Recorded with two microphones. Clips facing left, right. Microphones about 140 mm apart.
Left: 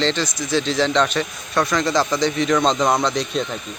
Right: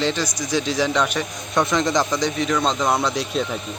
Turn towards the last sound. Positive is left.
turn(degrees=-5)  # may be behind; listen again after turning